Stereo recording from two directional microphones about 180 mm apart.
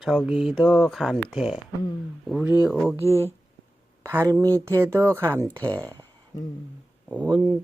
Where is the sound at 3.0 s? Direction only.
10° right (ahead or behind).